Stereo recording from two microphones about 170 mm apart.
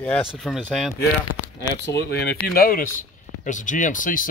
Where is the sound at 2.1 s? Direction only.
65° left (ahead or behind).